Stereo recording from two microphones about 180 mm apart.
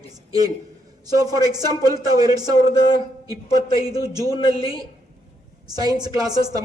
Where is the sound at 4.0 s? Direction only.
20° right (ahead or behind).